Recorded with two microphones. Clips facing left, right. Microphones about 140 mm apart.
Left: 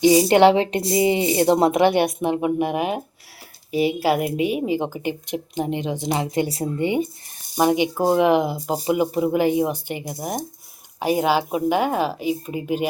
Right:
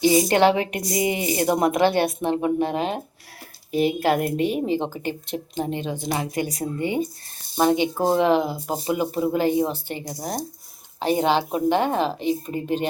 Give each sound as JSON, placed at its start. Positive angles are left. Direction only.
{"t": 0.2, "sound": "a woman's voice", "side_deg": 20}
{"t": 11.0, "sound": "speech", "side_deg": 10}